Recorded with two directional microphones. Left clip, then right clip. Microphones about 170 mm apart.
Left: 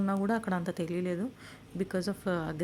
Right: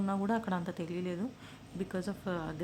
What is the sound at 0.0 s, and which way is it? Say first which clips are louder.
A woman's voice: left 2 dB; 20° left (ahead or behind).